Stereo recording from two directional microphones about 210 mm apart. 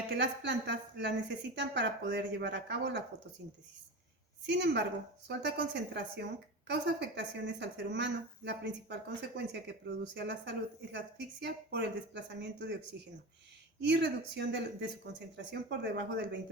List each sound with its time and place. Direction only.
0.1 s speech: 55° right (ahead or behind)
4.4 s a woman's voice: 55° right (ahead or behind)